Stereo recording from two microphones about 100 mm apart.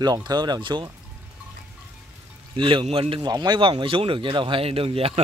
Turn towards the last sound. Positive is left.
turn(degrees=-75)  # may be behind; listen again after turning